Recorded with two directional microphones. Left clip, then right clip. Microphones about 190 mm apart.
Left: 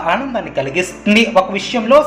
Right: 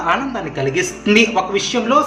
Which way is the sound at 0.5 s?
10° left (ahead or behind).